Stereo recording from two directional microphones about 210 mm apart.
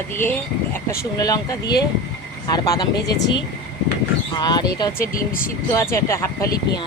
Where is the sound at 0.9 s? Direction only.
15° left (ahead or behind).